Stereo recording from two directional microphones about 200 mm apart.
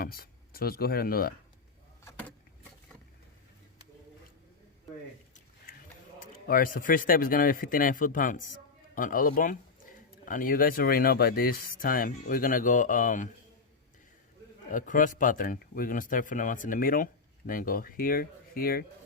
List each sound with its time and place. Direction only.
0.0 s speech: 50° left (ahead or behind)
2.0 s vehicle: 10° left (ahead or behind)
6.1 s speech: 45° left (ahead or behind)
14.7 s speech: 40° left (ahead or behind)